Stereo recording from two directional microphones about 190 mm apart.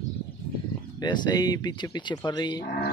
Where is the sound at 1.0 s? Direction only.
20° left (ahead or behind).